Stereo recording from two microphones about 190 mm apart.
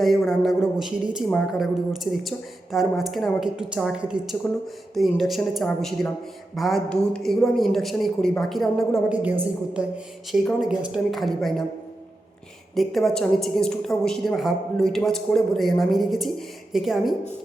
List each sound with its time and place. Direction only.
0.3 s a woman's voice: centre (ahead or behind)
12.7 s a woman's voice: centre (ahead or behind)